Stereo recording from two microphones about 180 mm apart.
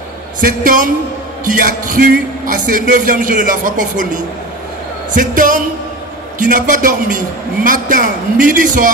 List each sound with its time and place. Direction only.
0.4 s a man's voice: 50° right (ahead or behind)